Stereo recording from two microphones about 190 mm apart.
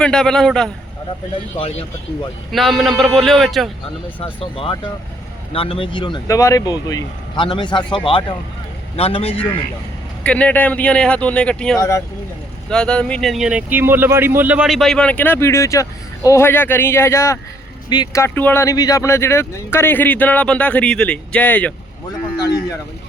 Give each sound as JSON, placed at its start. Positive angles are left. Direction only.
{"t": 0.0, "sound": "speech", "side_deg": 5}
{"t": 1.5, "sound": "speech", "side_deg": 30}
{"t": 2.5, "sound": "speech", "side_deg": 0}
{"t": 4.2, "sound": "speech", "side_deg": 30}
{"t": 10.2, "sound": "speech", "side_deg": 5}
{"t": 11.8, "sound": "speech", "side_deg": 15}
{"t": 12.6, "sound": "speech", "side_deg": 5}